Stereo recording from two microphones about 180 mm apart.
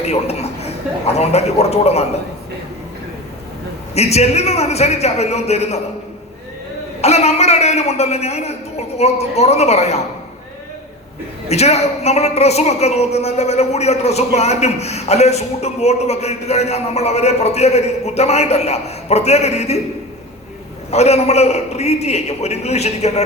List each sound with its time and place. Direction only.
0.0 s a woman's voice: 35° left (ahead or behind)
3.9 s a woman's voice: 35° left (ahead or behind)
7.0 s a woman's voice: 35° left (ahead or behind)
11.4 s a woman's voice: 35° left (ahead or behind)
20.9 s a woman's voice: 35° left (ahead or behind)